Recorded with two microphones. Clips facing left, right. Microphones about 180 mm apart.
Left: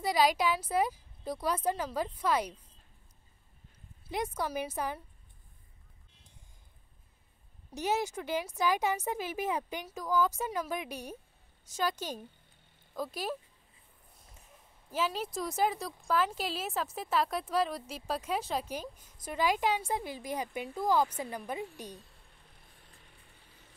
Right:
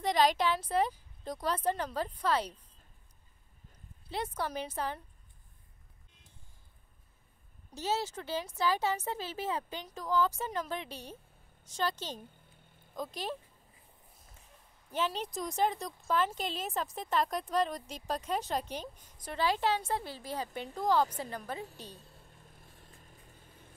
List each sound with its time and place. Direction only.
0.0 s speech: 10° left (ahead or behind)
4.4 s speech: 10° left (ahead or behind)
7.7 s speech: 15° left (ahead or behind)
14.9 s speech: 5° left (ahead or behind)
22.3 s vehicle: 45° right (ahead or behind)